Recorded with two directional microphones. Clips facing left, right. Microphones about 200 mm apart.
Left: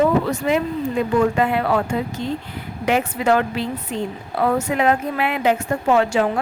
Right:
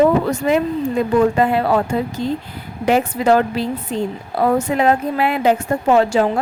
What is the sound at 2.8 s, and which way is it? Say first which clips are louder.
A woman's voice: right 3 dB; 35° right (ahead or behind).